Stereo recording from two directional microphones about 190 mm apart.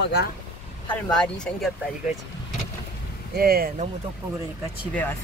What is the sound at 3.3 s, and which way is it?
Speech, 55° right (ahead or behind).